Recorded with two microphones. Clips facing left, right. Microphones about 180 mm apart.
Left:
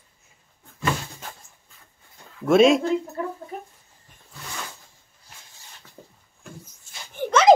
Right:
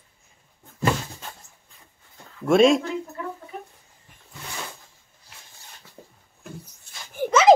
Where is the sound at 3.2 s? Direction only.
40° left (ahead or behind).